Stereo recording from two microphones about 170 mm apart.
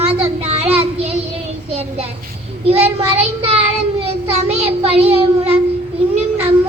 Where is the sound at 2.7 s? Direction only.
35° right (ahead or behind).